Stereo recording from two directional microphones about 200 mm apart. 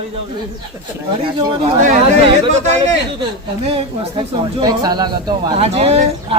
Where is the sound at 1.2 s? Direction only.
25° right (ahead or behind).